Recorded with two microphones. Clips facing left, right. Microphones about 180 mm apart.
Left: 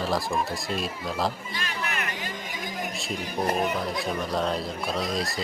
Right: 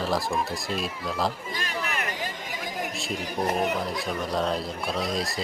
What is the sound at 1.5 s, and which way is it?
Speech, 40° right (ahead or behind).